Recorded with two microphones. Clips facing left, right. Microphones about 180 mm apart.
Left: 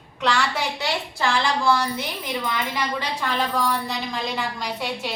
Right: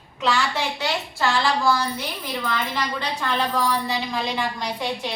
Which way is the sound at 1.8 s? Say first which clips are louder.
Left 1 dB; 20° left (ahead or behind).